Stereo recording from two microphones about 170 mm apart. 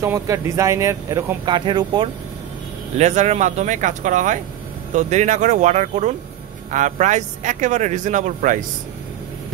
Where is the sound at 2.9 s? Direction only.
40° right (ahead or behind).